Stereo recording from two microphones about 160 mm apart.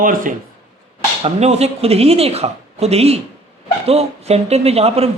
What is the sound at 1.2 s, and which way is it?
Speech, 40° right (ahead or behind).